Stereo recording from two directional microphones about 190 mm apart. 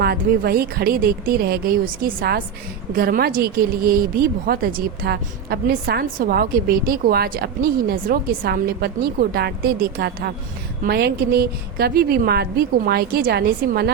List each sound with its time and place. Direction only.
0.0 s a woman's voice: 55° right (ahead or behind)